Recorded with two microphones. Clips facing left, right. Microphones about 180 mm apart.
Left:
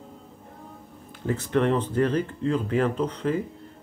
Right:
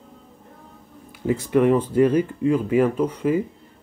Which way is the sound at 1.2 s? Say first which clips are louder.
Right 5 dB; 10° right (ahead or behind).